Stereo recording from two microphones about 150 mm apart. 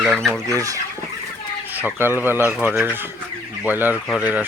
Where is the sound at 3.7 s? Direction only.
10° right (ahead or behind).